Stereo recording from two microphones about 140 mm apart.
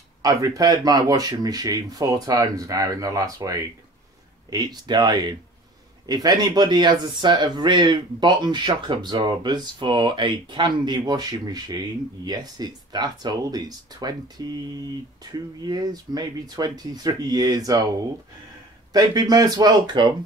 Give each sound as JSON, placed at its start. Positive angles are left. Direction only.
{"t": 0.2, "sound": "speech", "side_deg": -25}
{"t": 15.3, "sound": "speech", "side_deg": -30}
{"t": 18.9, "sound": "speech", "side_deg": -25}